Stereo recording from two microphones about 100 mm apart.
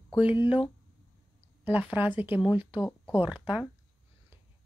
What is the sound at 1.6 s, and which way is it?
Speech, 20° right (ahead or behind).